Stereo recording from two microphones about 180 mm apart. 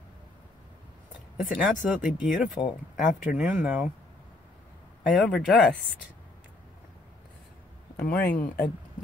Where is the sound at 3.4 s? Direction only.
10° right (ahead or behind).